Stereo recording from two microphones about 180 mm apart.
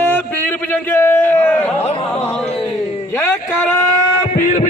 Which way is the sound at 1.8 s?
35° left (ahead or behind).